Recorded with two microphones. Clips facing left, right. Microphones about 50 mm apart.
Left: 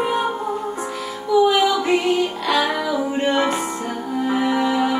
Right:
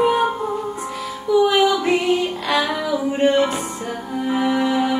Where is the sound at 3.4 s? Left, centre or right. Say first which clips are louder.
Even; left.